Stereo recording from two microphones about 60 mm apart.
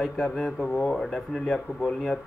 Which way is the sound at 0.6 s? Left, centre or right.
Left.